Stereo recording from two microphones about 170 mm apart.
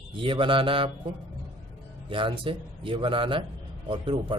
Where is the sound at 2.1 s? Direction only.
30° right (ahead or behind).